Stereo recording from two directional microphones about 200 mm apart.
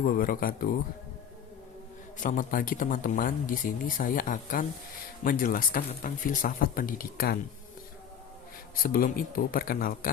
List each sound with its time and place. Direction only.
0.0 s speech: 45° left (ahead or behind)
2.1 s speech: 40° left (ahead or behind)
8.8 s speech: 45° left (ahead or behind)